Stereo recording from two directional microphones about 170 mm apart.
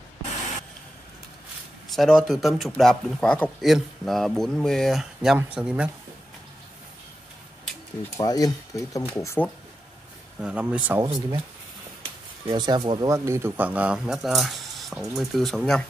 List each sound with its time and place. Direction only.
2.0 s speech: 5° left (ahead or behind)
8.2 s speech: 20° left (ahead or behind)
10.4 s speech: 10° right (ahead or behind)
11.0 s speech: 25° right (ahead or behind)
12.4 s speech: 25° right (ahead or behind); by 15.8 s centre (ahead or behind)